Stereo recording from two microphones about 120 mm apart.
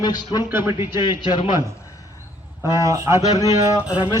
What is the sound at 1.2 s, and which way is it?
Speech, 45° left (ahead or behind).